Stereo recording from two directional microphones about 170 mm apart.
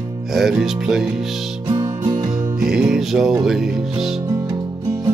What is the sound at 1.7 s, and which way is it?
Music, 25° right (ahead or behind).